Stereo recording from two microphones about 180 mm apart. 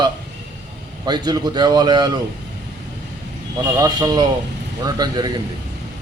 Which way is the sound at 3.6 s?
20° right (ahead or behind).